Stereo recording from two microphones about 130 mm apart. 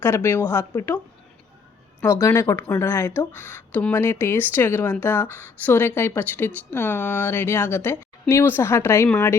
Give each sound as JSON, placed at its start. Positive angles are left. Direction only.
{"t": 0.0, "sound": "speech", "side_deg": 20}
{"t": 2.0, "sound": "speech", "side_deg": 20}